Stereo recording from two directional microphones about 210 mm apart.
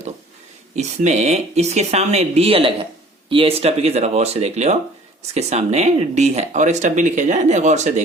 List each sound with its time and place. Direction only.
0.8 s speech: 35° right (ahead or behind)